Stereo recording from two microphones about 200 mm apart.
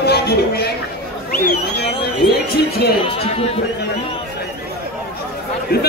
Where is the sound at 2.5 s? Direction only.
50° left (ahead or behind).